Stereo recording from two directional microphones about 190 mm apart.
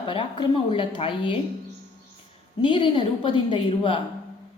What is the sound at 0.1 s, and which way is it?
A woman's voice, 25° left (ahead or behind).